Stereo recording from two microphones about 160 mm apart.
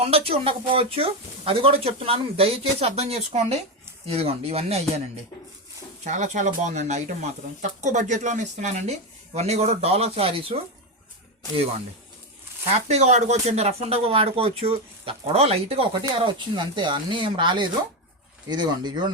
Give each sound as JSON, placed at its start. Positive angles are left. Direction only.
{"t": 0.0, "sound": "speech", "side_deg": -40}
{"t": 6.1, "sound": "speech", "side_deg": -50}
{"t": 12.7, "sound": "speech", "side_deg": -45}